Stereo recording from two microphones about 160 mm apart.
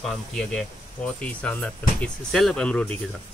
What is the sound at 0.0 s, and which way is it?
Speech, 5° left (ahead or behind).